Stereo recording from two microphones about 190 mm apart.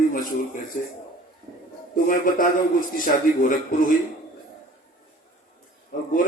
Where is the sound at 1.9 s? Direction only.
45° left (ahead or behind).